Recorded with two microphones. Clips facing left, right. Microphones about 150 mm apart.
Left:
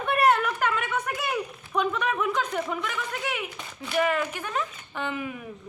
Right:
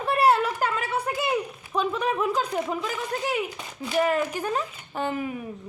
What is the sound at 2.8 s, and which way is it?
A woman's voice, 35° right (ahead or behind).